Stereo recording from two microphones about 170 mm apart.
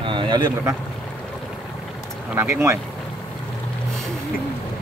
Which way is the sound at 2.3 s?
15° right (ahead or behind).